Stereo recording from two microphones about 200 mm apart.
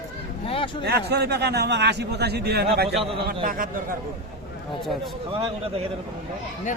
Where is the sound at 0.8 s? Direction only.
55° right (ahead or behind).